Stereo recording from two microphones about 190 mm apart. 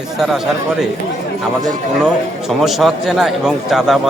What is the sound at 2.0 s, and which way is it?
A man's voice, centre (ahead or behind).